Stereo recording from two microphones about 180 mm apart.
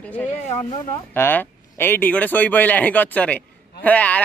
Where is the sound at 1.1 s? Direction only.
10° left (ahead or behind).